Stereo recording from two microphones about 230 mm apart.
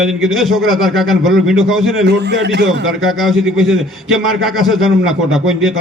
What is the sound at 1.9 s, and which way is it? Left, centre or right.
Speech, right.